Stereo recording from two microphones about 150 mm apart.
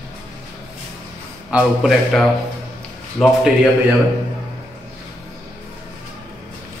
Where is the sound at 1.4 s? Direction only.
5° right (ahead or behind).